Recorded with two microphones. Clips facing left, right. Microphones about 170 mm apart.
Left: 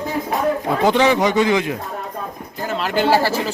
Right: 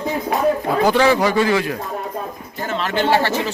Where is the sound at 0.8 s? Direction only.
20° left (ahead or behind).